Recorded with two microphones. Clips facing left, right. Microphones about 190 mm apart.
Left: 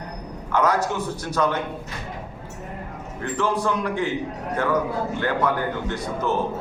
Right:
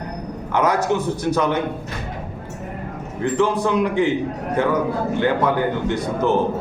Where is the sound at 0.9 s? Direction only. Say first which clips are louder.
Right 5 dB; 20° right (ahead or behind).